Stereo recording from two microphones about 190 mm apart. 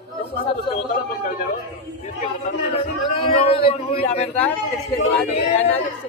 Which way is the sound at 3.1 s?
30° left (ahead or behind).